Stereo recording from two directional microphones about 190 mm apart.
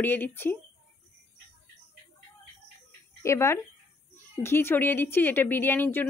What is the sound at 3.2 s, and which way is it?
Speech, 15° left (ahead or behind).